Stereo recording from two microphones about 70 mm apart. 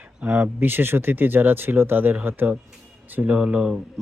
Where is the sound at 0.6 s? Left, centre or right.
Right.